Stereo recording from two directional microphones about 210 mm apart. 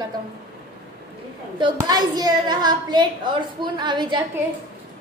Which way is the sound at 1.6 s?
20° right (ahead or behind).